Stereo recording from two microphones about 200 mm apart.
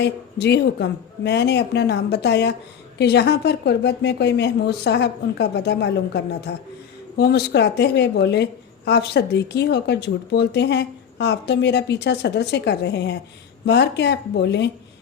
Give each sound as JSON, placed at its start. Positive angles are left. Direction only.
{"t": 0.0, "sound": "a woman's voice", "side_deg": 55}